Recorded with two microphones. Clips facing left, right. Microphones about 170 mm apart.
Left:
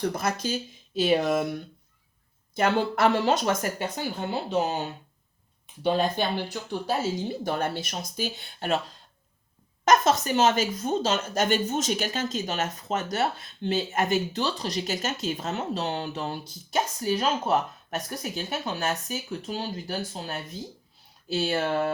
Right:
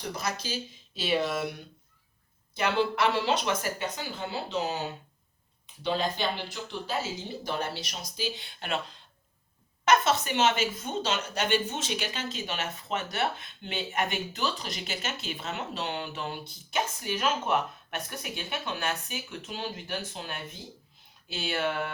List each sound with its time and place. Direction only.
0.2 s speech: 50° left (ahead or behind)
2.6 s speech: 50° left (ahead or behind)
5.8 s speech: 50° left (ahead or behind)
9.8 s a woman's voice: 40° left (ahead or behind)